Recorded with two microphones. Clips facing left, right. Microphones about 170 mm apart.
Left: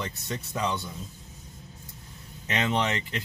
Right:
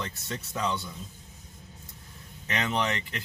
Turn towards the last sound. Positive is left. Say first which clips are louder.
# left 2 dB
turn(degrees=25)  # may be behind; listen again after turning